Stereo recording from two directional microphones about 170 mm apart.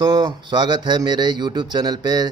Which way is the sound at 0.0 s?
25° right (ahead or behind).